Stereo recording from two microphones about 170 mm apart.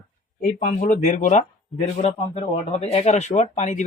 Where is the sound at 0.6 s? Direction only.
45° left (ahead or behind).